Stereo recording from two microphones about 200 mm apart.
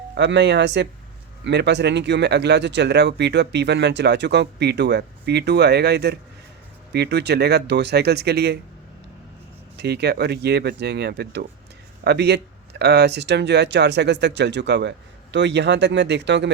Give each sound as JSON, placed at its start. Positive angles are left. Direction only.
{"t": 0.1, "sound": "speech", "side_deg": -60}
{"t": 9.7, "sound": "speech", "side_deg": -55}